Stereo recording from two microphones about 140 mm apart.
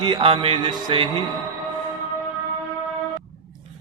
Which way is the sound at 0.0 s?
35° right (ahead or behind).